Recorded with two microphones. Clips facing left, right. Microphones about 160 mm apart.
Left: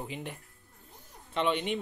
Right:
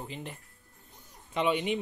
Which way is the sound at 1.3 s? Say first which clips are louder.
Right 1 dB; 10° right (ahead or behind).